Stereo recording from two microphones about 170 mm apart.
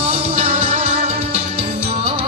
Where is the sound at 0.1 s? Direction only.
40° right (ahead or behind).